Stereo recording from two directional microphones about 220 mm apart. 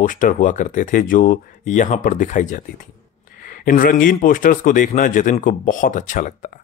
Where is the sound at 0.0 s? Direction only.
35° left (ahead or behind).